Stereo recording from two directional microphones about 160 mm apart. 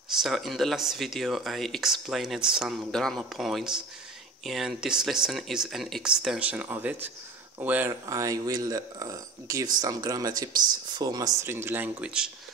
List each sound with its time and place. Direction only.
0.2 s speech: centre (ahead or behind)